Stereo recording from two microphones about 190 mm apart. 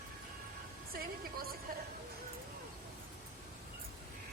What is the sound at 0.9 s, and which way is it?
Music, 50° right (ahead or behind).